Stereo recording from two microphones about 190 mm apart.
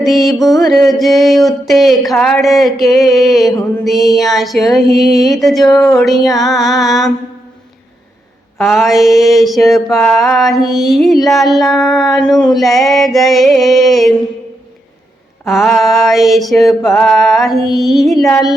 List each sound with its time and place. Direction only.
0.0 s child singing: centre (ahead or behind)
5.6 s speech: 15° left (ahead or behind)
6.0 s child singing: centre (ahead or behind)
8.5 s child singing: centre (ahead or behind)
15.4 s child singing: centre (ahead or behind)